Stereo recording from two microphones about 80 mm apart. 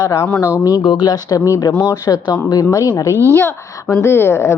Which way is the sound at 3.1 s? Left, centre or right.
Right.